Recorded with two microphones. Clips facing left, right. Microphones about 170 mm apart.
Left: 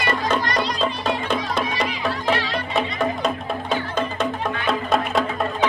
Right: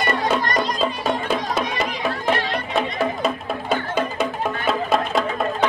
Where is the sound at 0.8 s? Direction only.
5° right (ahead or behind).